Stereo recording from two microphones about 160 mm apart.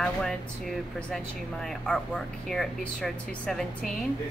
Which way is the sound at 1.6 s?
5° left (ahead or behind).